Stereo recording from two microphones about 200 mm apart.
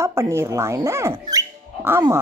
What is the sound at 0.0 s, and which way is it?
Speech, 15° right (ahead or behind).